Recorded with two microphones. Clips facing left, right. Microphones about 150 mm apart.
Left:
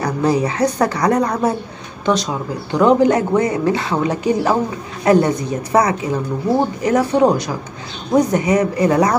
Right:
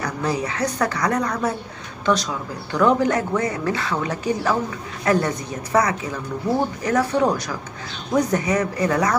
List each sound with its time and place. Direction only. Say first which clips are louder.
0.0 s speech: left 7 dB; 30° left (ahead or behind)